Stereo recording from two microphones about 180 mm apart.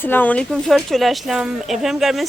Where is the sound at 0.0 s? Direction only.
10° left (ahead or behind).